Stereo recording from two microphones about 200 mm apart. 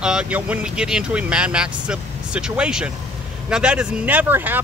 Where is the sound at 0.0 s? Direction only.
5° right (ahead or behind).